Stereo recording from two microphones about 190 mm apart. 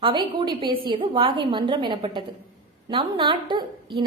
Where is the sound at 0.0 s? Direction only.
25° right (ahead or behind).